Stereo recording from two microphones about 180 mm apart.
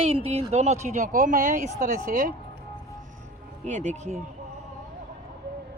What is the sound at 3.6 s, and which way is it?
Speech, 40° right (ahead or behind).